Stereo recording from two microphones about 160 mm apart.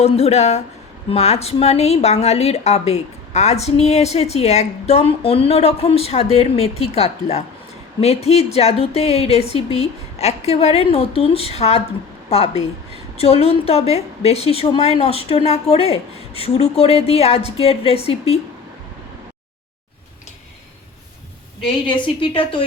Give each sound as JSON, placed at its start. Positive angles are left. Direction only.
{"t": 0.0, "sound": "a woman's voice", "side_deg": 40}
{"t": 22.2, "sound": "a woman's voice", "side_deg": 35}